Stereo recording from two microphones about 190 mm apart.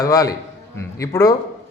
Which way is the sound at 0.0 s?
20° left (ahead or behind).